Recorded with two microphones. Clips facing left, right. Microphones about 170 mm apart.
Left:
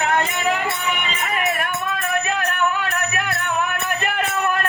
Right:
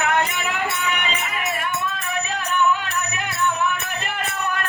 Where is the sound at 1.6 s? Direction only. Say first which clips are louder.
Left 2 dB; 60° left (ahead or behind).